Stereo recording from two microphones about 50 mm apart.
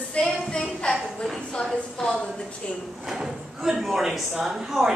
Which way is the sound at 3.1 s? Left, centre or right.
Centre.